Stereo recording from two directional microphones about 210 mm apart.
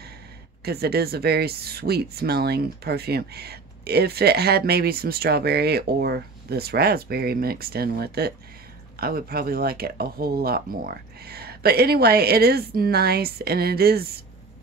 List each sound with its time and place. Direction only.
0.7 s speech: 50° right (ahead or behind)